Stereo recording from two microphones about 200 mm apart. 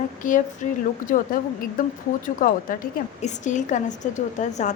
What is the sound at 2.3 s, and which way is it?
A woman's voice, 45° left (ahead or behind).